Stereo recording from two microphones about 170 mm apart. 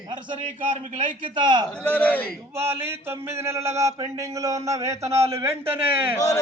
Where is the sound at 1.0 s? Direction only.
50° right (ahead or behind).